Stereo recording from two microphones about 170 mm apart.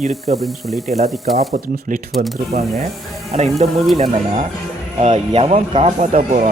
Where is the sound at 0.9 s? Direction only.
40° right (ahead or behind).